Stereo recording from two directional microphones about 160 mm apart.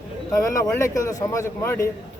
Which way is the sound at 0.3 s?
20° left (ahead or behind).